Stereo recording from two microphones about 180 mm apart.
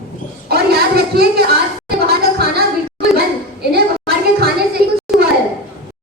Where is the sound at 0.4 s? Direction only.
60° right (ahead or behind).